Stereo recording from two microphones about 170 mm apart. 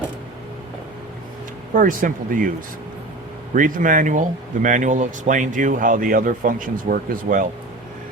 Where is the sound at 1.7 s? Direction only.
55° right (ahead or behind).